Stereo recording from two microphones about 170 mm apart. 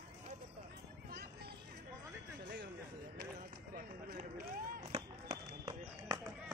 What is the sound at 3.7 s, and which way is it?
Run, 60° right (ahead or behind).